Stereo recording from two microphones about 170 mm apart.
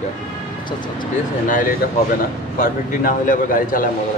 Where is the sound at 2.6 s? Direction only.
55° left (ahead or behind).